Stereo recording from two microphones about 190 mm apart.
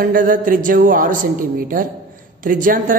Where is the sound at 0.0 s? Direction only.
45° right (ahead or behind).